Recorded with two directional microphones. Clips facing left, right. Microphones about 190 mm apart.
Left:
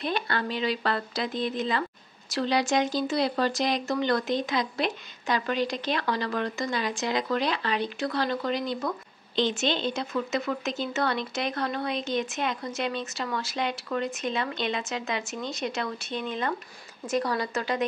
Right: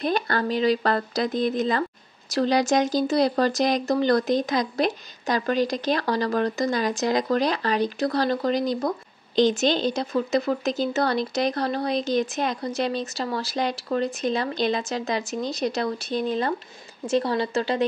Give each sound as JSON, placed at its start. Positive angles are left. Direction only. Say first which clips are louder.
{"t": 0.0, "sound": "speech", "louder": "right 5 dB", "side_deg": -40}